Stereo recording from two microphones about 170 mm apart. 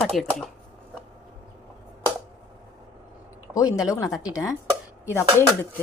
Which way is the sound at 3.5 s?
20° left (ahead or behind).